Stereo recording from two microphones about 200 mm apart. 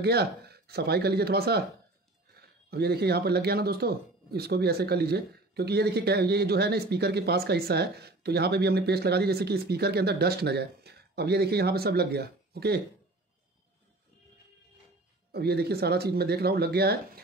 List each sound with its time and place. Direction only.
0.0 s speech: 55° right (ahead or behind)
15.3 s speech: 55° right (ahead or behind)